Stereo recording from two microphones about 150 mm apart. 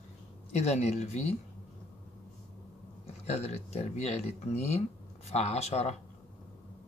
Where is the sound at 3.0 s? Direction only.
45° left (ahead or behind).